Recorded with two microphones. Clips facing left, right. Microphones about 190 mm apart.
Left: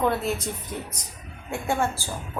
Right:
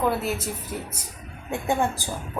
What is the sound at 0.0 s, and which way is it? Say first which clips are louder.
Speech: even; 5° right (ahead or behind).